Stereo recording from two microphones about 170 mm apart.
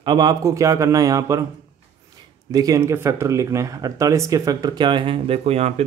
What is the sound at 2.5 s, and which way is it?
Speech, 20° right (ahead or behind).